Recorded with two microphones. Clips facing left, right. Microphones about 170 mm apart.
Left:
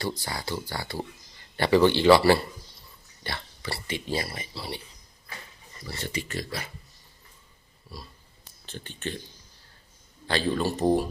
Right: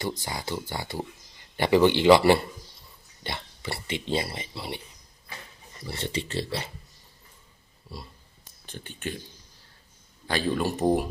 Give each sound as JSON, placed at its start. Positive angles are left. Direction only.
{"t": 0.0, "sound": "speech", "side_deg": -20}
{"t": 5.8, "sound": "speech", "side_deg": -25}
{"t": 8.6, "sound": "speech", "side_deg": -10}
{"t": 10.2, "sound": "speech", "side_deg": -10}